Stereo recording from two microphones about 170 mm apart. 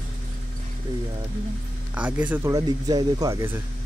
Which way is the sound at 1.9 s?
10° right (ahead or behind).